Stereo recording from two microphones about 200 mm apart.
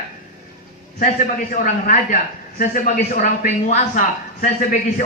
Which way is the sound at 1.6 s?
40° left (ahead or behind).